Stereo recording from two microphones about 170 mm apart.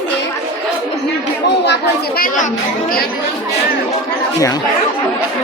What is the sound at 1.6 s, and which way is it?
Speech, 90° left.